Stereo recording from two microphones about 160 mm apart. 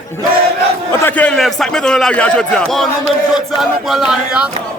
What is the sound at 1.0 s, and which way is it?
Speech, 10° left (ahead or behind).